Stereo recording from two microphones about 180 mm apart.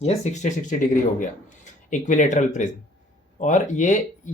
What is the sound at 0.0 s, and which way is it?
Speech, 40° left (ahead or behind).